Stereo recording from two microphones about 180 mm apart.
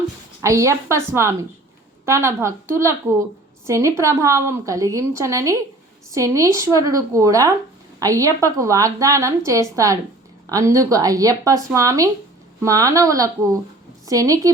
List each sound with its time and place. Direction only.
0.4 s a woman's voice: 15° right (ahead or behind)